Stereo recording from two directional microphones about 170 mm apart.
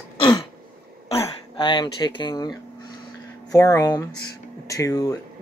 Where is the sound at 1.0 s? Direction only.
30° left (ahead or behind).